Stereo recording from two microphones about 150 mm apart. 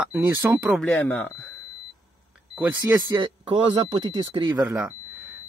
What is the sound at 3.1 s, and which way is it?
Speech, 30° right (ahead or behind).